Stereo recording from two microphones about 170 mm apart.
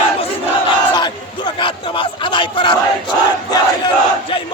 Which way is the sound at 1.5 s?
30° left (ahead or behind).